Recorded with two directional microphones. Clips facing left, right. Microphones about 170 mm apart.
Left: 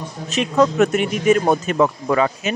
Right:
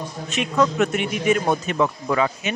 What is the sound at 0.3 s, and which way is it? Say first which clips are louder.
A man's voice: left 4 dB; 35° left (ahead or behind).